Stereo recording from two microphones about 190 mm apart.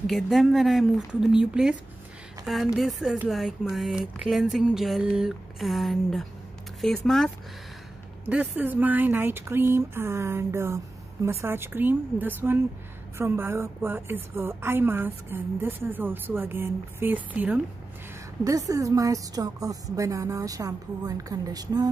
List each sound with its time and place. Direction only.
0.0 s speech: centre (ahead or behind)
8.3 s a woman's voice: 10° right (ahead or behind)